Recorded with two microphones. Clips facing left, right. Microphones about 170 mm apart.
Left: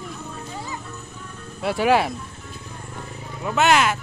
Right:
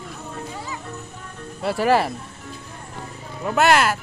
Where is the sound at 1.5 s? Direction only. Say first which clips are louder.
Even; centre (ahead or behind).